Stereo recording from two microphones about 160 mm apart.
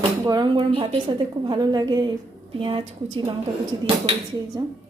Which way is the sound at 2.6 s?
35° right (ahead or behind).